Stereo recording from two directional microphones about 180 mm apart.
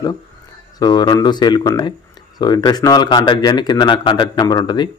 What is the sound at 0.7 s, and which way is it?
Speech, 25° left (ahead or behind).